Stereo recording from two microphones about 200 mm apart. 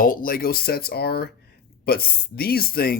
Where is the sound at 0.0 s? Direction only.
45° left (ahead or behind).